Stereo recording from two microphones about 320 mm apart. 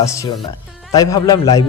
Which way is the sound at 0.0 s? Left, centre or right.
Centre.